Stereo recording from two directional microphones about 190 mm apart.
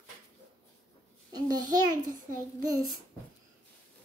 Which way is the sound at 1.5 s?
20° right (ahead or behind).